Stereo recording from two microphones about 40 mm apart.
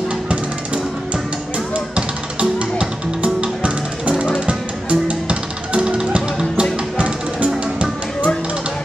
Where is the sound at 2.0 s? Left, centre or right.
Right.